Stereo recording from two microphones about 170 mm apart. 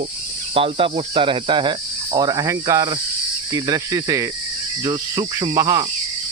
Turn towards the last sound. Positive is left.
turn(degrees=-20)  # may be behind; listen again after turning